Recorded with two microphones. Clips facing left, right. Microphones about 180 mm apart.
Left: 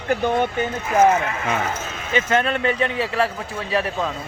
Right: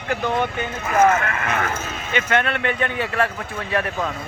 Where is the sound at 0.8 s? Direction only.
65° right (ahead or behind).